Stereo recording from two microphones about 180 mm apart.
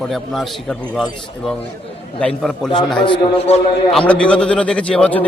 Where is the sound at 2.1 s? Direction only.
5° left (ahead or behind).